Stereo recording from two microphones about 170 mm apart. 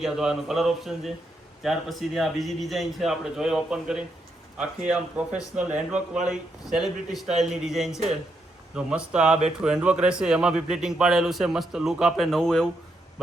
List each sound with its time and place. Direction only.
0.0 s a man's voice: 5° right (ahead or behind)